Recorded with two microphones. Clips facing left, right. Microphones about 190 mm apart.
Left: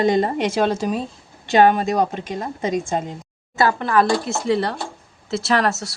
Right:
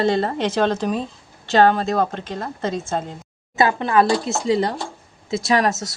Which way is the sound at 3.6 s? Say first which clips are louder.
Right 1 dB; 20° right (ahead or behind).